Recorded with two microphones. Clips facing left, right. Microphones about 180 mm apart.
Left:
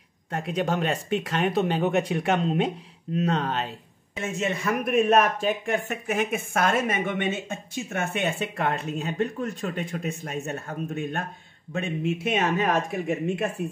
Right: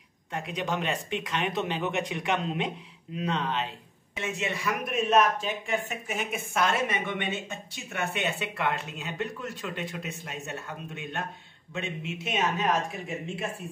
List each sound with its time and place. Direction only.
0.3 s speech: 45° left (ahead or behind)